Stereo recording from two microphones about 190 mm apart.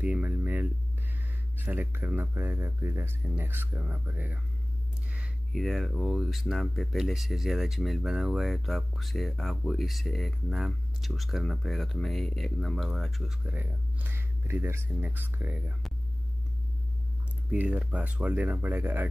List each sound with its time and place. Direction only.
0.0 s a sound: 10° right (ahead or behind)
1.6 s speech: 10° right (ahead or behind)
17.5 s speech: 5° right (ahead or behind)